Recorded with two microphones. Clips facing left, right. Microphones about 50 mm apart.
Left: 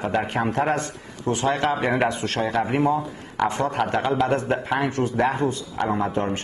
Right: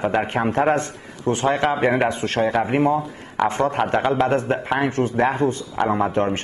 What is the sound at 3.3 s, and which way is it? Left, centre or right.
Speech, right.